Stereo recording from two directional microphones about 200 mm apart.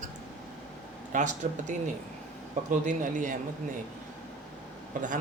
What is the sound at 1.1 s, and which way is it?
A man's voice, 35° right (ahead or behind).